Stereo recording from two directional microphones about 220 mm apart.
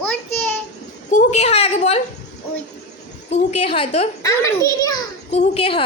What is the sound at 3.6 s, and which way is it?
Speech, 30° left (ahead or behind).